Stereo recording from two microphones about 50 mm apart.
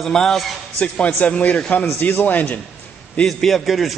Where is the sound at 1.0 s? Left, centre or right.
Left.